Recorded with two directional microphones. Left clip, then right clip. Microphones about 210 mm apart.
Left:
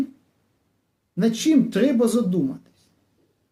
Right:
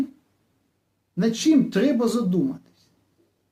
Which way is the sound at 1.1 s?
5° left (ahead or behind).